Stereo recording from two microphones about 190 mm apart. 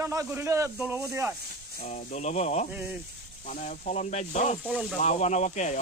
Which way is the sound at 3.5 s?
40° left (ahead or behind).